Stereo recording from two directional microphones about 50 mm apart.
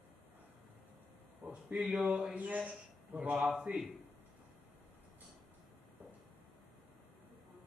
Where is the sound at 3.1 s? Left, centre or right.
Right.